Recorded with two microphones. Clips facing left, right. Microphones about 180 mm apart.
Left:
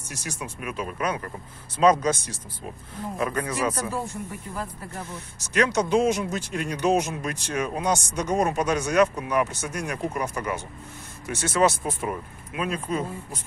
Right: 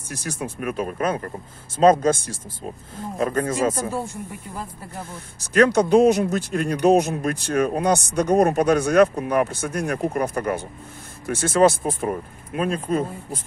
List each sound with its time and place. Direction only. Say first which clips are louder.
0.1 s speech: right 6 dB; 55° right (ahead or behind)
5.1 s speech: right 6 dB; 55° right (ahead or behind)